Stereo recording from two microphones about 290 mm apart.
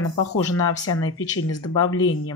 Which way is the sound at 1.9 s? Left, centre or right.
Left.